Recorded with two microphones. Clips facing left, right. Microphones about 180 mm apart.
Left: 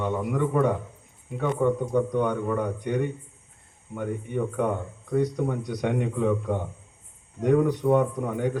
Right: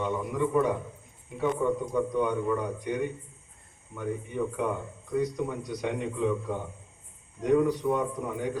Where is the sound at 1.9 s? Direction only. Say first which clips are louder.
Left 3 dB; 60° left (ahead or behind).